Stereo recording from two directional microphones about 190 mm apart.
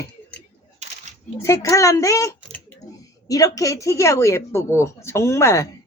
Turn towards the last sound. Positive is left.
turn(degrees=15)  # may be behind; listen again after turning